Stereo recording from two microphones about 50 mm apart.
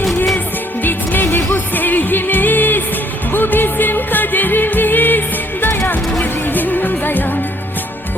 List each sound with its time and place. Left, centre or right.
0.8 s music: left
6.5 s music: left